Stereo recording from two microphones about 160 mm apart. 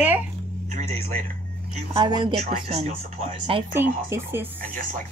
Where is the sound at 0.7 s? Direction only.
45° right (ahead or behind).